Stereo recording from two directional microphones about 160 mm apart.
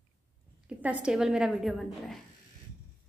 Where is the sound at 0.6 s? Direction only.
10° right (ahead or behind).